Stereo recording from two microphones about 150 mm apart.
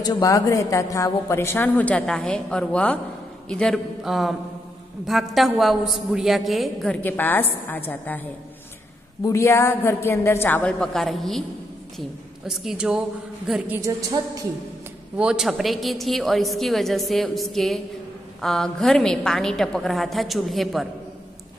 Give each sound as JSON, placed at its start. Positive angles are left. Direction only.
{"t": 0.0, "sound": "a woman's voice", "side_deg": 20}
{"t": 7.0, "sound": "a woman's voice", "side_deg": 10}
{"t": 12.4, "sound": "a woman's voice", "side_deg": -5}
{"t": 13.8, "sound": "a woman's voice", "side_deg": -25}
{"t": 15.1, "sound": "a woman's voice", "side_deg": -5}